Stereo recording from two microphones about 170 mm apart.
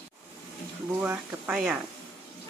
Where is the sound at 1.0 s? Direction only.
5° right (ahead or behind).